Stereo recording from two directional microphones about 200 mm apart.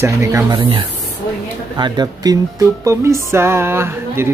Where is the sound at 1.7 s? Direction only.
20° right (ahead or behind).